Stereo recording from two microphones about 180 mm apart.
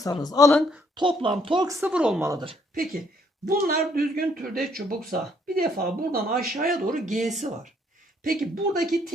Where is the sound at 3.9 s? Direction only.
55° right (ahead or behind).